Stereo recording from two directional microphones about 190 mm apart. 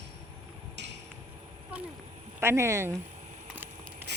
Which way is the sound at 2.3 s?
15° right (ahead or behind).